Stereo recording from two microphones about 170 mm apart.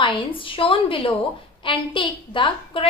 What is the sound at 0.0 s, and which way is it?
A woman's voice, 30° left (ahead or behind).